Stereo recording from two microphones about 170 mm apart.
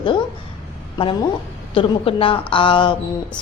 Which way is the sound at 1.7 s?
30° left (ahead or behind).